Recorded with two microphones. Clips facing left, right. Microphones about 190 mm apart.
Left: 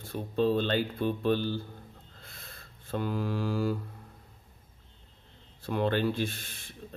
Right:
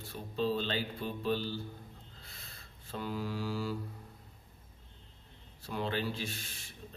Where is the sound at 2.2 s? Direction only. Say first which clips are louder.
Left 4 dB; 50° left (ahead or behind).